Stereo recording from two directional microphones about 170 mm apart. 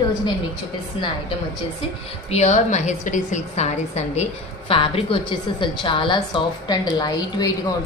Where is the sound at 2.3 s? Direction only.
40° left (ahead or behind).